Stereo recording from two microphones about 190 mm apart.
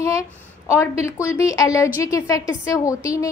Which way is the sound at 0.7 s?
15° left (ahead or behind).